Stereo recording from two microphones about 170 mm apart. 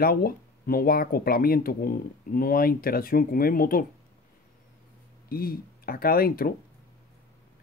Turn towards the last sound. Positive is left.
turn(degrees=60)  # may be behind; listen again after turning